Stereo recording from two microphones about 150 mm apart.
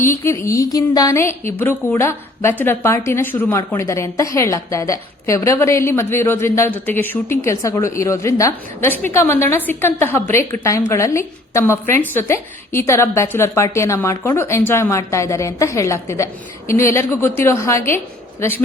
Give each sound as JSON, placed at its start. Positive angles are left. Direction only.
{"t": 0.0, "sound": "a woman's voice", "side_deg": 20}